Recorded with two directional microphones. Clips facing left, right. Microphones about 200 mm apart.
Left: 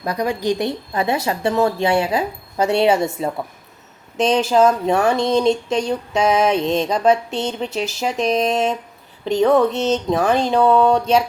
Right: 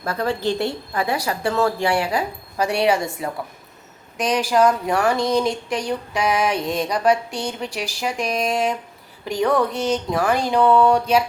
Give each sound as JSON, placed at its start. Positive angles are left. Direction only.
{"t": 0.0, "sound": "speech", "side_deg": 15}